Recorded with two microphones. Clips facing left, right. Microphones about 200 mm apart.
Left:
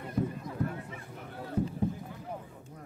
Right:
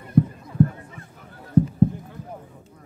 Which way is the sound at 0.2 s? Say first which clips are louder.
Right 12 dB; 55° right (ahead or behind).